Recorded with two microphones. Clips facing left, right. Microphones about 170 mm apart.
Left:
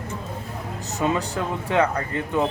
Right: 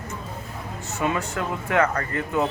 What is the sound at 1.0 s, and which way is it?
Speech, 25° left (ahead or behind).